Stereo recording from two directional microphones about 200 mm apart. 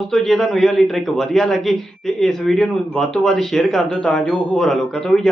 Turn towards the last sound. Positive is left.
turn(degrees=0)  # may be behind; listen again after turning